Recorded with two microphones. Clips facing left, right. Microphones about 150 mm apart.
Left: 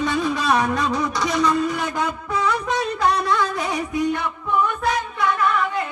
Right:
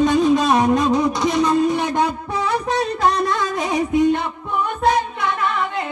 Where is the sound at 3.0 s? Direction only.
45° right (ahead or behind).